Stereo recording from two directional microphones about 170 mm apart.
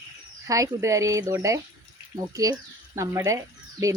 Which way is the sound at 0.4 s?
20° right (ahead or behind).